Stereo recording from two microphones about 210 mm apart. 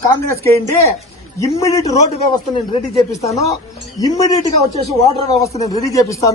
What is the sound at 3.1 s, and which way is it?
Speech, 15° left (ahead or behind).